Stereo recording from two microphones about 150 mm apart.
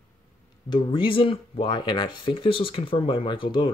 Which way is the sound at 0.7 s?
35° left (ahead or behind).